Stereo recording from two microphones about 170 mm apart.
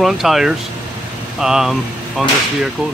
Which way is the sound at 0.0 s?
Centre (ahead or behind).